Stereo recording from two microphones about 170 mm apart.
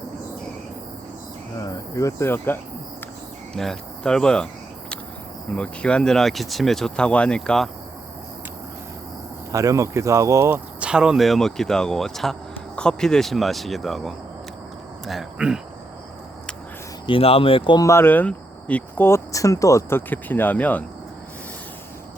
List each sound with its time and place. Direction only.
1.6 s speech: 20° left (ahead or behind)
3.5 s speech: 5° left (ahead or behind)
5.5 s speech: 5° left (ahead or behind)
9.5 s speech: 20° right (ahead or behind)
17.1 s speech: 35° left (ahead or behind); by 20.8 s 10° left (ahead or behind)